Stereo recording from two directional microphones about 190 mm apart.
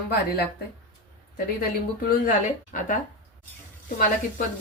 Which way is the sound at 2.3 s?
45° left (ahead or behind).